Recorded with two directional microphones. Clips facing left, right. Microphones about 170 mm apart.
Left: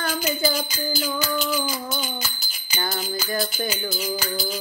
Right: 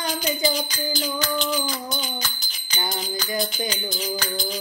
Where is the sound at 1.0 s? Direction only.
5° left (ahead or behind).